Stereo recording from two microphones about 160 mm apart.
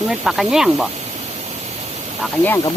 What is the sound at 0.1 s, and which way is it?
Speech, centre (ahead or behind).